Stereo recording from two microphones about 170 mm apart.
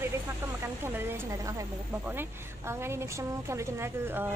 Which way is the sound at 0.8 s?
15° right (ahead or behind).